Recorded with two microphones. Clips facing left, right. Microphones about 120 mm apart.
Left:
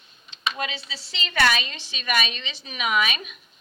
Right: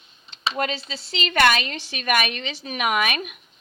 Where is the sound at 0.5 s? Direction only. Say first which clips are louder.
Right 5 dB; 55° right (ahead or behind).